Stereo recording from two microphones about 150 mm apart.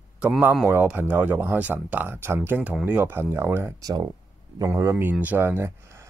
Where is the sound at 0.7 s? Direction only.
10° right (ahead or behind).